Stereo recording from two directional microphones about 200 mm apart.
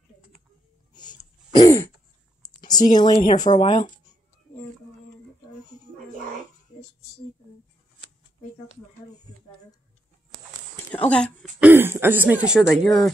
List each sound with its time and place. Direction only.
0.9 s throat clearing: 20° left (ahead or behind)
2.4 s speech: 20° left (ahead or behind)
3.4 s speech: 35° left (ahead or behind)
10.9 s speech: 5° left (ahead or behind)
11.6 s speech: 10° right (ahead or behind)